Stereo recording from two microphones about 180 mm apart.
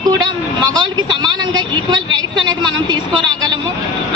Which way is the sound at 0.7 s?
25° right (ahead or behind).